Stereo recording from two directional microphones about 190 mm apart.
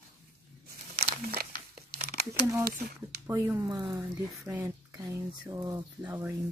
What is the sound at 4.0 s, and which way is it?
Speech, 10° right (ahead or behind).